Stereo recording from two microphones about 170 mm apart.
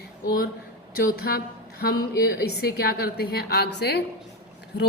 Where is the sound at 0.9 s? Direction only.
70° left (ahead or behind).